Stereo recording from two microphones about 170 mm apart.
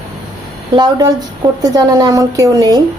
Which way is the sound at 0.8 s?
20° right (ahead or behind).